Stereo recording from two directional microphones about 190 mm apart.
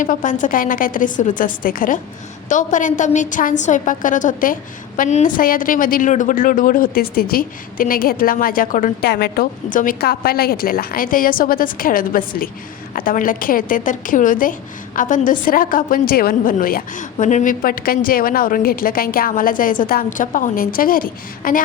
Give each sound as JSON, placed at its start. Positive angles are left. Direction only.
{"t": 0.0, "sound": "a woman's voice", "side_deg": 45}